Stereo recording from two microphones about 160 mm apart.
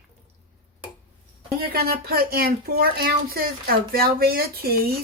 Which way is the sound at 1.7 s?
70° right (ahead or behind).